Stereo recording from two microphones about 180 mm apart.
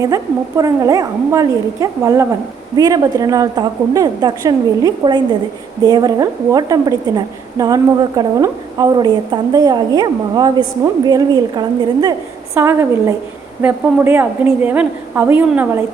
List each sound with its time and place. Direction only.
0.0 s a woman's voice: 20° right (ahead or behind)